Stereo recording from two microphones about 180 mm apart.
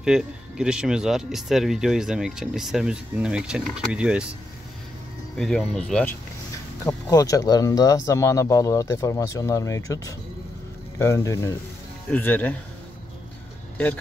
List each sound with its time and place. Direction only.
0.0 s speech: 5° right (ahead or behind)
5.4 s speech: 5° left (ahead or behind)
6.9 s speech: 20° left (ahead or behind)